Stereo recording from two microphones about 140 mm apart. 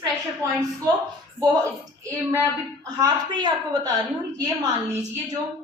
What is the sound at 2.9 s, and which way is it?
Speech, 30° right (ahead or behind).